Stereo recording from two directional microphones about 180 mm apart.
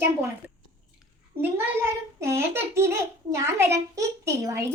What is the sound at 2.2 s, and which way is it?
A woman's voice, 15° right (ahead or behind).